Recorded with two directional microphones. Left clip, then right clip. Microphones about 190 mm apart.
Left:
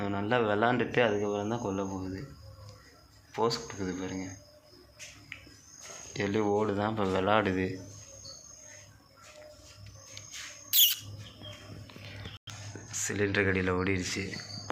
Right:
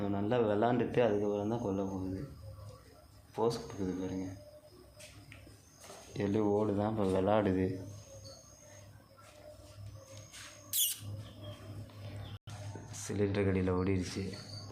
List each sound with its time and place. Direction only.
0.0 s speech: centre (ahead or behind)
3.3 s speech: centre (ahead or behind)
6.1 s speech: 5° right (ahead or behind)
10.7 s a sound: 15° right (ahead or behind)
13.0 s speech: 5° right (ahead or behind)